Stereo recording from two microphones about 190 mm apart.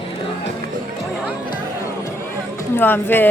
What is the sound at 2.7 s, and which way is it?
Speech, 10° left (ahead or behind).